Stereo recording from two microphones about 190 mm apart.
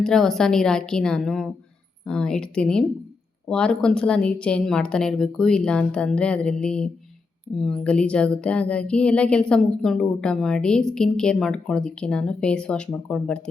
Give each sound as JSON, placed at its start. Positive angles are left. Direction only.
{"t": 0.0, "sound": "speech", "side_deg": 0}